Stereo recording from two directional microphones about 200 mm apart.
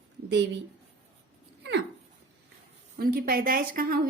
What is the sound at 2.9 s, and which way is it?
A woman's voice, 50° right (ahead or behind).